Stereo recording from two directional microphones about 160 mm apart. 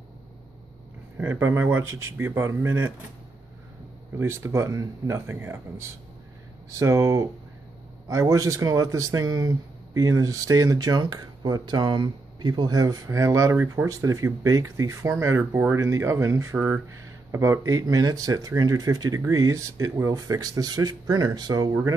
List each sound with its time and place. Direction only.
1.1 s speech: 15° right (ahead or behind)
4.2 s speech: 15° right (ahead or behind)